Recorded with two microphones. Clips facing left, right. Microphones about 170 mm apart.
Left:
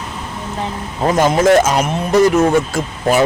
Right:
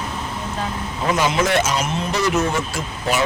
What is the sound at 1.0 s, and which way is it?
Speech, 45° left (ahead or behind).